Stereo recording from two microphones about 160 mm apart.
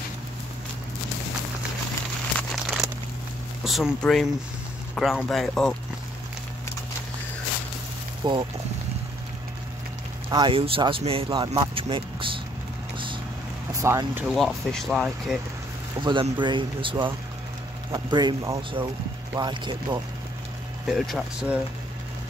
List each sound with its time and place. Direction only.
2.3 s crumpling: centre (ahead or behind)
3.6 s speech: centre (ahead or behind)
8.2 s speech: 25° right (ahead or behind)
10.3 s speech: 30° right (ahead or behind)
13.7 s speech: 20° right (ahead or behind)
14.3 s speech: centre (ahead or behind)
16.0 s speech: 30° right (ahead or behind)
20.8 s speech: 5° right (ahead or behind)